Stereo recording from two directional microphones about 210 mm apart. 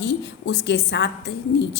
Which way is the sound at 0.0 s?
55° left (ahead or behind).